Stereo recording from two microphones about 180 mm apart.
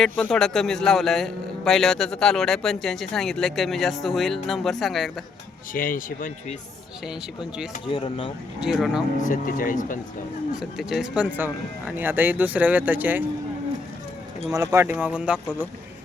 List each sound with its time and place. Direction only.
0.0 s a man's voice: centre (ahead or behind)
5.7 s speech: 50° left (ahead or behind)
7.9 s speech: 30° left (ahead or behind)
8.6 s a man's voice: centre (ahead or behind)
9.1 s speech: 45° left (ahead or behind)
10.6 s speech: centre (ahead or behind)
14.5 s speech: 20° right (ahead or behind)